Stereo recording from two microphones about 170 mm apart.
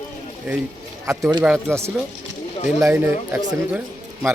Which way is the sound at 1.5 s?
10° right (ahead or behind).